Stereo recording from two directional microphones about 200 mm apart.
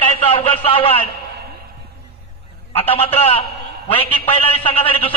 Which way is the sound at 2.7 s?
30° left (ahead or behind).